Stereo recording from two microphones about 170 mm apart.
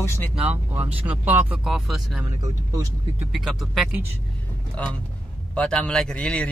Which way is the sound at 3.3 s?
Centre (ahead or behind).